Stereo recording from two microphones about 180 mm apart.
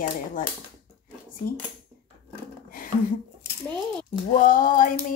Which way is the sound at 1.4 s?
55° left (ahead or behind).